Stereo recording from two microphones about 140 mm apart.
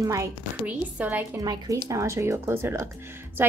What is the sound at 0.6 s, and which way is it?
Speech, 10° right (ahead or behind).